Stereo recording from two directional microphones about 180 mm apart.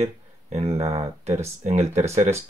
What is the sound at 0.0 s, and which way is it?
Speech, 35° right (ahead or behind).